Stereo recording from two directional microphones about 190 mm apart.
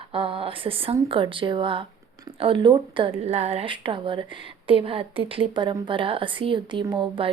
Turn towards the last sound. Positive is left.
turn(degrees=-25)  # may be behind; listen again after turning